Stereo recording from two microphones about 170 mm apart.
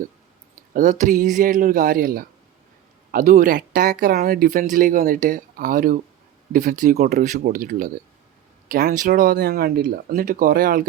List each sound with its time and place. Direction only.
0.7 s speech: 45° right (ahead or behind); by 10.0 s 65° right (ahead or behind)
10.1 s speech: 55° right (ahead or behind)